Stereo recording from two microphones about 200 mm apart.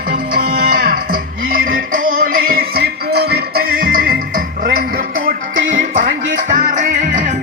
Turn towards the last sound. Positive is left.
turn(degrees=-40)  # may be behind; listen again after turning